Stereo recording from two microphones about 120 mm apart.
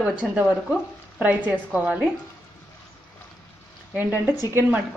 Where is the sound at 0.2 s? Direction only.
10° right (ahead or behind).